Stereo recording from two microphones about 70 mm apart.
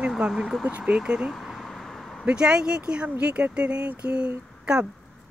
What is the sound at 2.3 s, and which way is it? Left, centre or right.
Speech, centre.